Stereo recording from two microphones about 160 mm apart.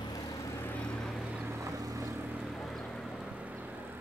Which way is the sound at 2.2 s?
5° right (ahead or behind).